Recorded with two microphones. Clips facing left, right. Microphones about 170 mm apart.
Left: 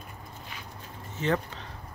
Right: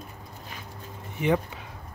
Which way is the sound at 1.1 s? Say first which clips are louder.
Right 3 dB; 15° right (ahead or behind).